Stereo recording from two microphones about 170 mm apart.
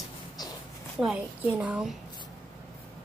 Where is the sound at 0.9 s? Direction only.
5° right (ahead or behind).